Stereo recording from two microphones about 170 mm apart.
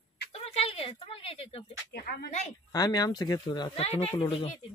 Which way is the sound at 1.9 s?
65° left (ahead or behind).